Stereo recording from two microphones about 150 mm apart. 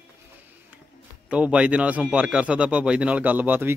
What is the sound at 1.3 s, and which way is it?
A man's voice, 10° right (ahead or behind).